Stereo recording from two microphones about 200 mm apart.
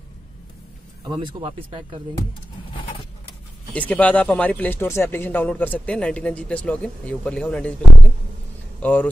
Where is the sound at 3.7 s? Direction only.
5° left (ahead or behind).